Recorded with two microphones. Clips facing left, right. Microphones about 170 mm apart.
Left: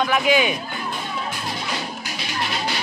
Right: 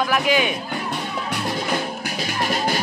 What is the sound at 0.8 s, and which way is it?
Music, 65° right (ahead or behind).